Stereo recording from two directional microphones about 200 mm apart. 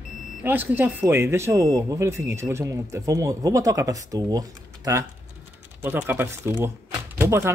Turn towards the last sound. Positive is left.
turn(degrees=-15)  # may be behind; listen again after turning